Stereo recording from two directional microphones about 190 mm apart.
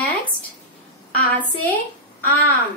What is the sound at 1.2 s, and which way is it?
Speech, 10° left (ahead or behind).